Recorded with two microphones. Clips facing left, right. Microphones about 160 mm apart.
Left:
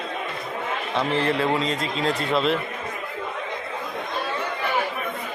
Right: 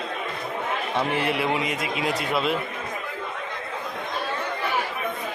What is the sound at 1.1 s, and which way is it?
A man's voice, 15° right (ahead or behind).